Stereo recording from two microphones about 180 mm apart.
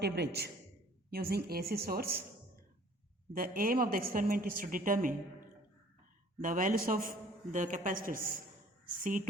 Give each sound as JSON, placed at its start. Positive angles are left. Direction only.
{"t": 0.0, "sound": "speech", "side_deg": -65}
{"t": 3.3, "sound": "a woman's voice", "side_deg": -50}
{"t": 6.4, "sound": "a woman's voice", "side_deg": -45}